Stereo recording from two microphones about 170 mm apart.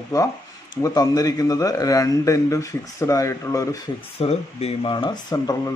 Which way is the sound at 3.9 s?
35° left (ahead or behind).